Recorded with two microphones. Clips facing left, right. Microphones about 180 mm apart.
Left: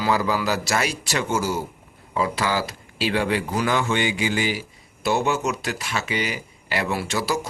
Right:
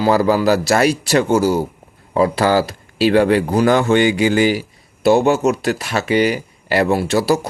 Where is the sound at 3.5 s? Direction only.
40° right (ahead or behind).